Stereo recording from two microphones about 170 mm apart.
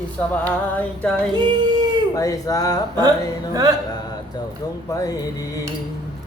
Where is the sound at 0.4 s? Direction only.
10° left (ahead or behind).